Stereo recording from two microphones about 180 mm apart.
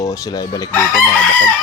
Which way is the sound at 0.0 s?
20° left (ahead or behind).